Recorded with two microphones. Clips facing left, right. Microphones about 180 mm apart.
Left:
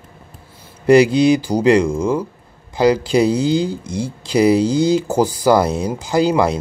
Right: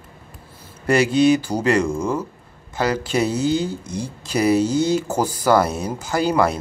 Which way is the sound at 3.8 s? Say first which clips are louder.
Left 5 dB; 10° left (ahead or behind).